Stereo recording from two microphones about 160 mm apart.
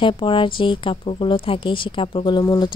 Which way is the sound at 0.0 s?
30° left (ahead or behind).